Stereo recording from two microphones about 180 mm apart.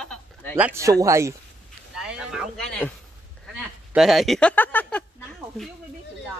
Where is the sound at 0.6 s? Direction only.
10° right (ahead or behind).